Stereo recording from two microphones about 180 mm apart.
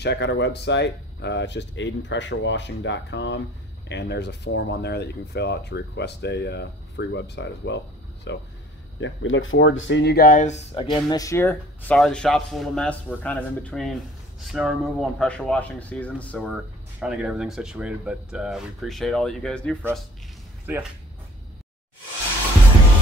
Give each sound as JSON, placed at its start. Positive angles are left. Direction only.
{"t": 0.0, "sound": "speech", "side_deg": 70}
{"t": 9.0, "sound": "speech", "side_deg": 90}
{"t": 10.9, "sound": "speech", "side_deg": 20}
{"t": 20.7, "sound": "speech", "side_deg": -10}